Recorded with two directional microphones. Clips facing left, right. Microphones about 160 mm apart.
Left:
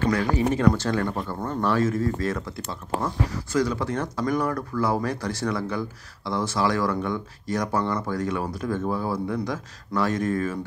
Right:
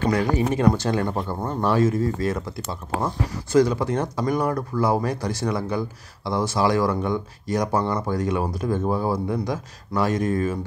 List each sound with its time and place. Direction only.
0.1 s speech: 15° right (ahead or behind)
3.5 s speech: 20° right (ahead or behind)